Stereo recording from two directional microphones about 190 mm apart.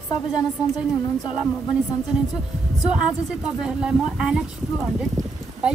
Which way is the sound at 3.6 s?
5° right (ahead or behind).